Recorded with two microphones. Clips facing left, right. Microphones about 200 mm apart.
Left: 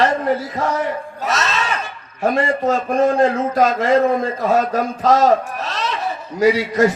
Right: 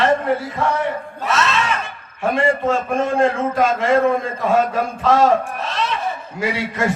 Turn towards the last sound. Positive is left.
turn(degrees=40)  # may be behind; listen again after turning